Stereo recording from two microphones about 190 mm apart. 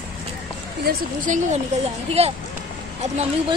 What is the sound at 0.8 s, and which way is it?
Speech, 40° right (ahead or behind).